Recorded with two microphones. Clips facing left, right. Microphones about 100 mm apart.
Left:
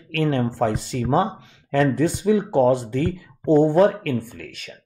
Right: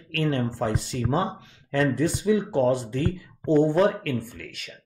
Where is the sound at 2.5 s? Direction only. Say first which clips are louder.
Left 5 dB; 25° left (ahead or behind).